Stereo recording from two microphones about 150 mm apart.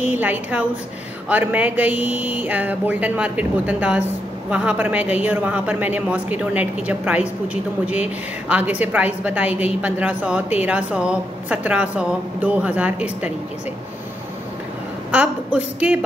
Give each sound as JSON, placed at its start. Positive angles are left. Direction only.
{"t": 0.0, "sound": "a woman's voice", "side_deg": -10}
{"t": 15.0, "sound": "a woman's voice", "side_deg": -10}